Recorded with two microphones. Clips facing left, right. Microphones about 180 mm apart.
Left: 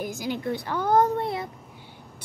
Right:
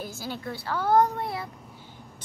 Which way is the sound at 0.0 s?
15° left (ahead or behind).